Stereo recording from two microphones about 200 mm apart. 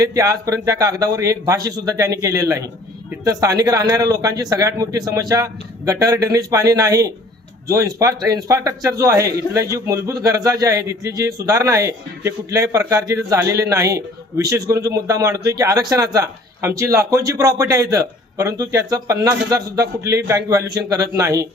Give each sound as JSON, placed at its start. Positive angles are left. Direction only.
{"t": 0.0, "sound": "a man's voice", "side_deg": -15}